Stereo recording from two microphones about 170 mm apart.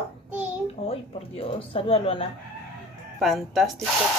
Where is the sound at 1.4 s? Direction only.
35° left (ahead or behind).